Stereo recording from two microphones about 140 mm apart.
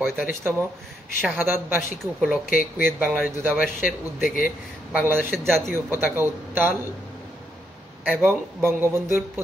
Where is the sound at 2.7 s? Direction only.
15° right (ahead or behind).